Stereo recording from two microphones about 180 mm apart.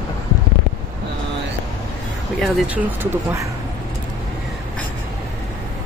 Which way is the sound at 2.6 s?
10° right (ahead or behind).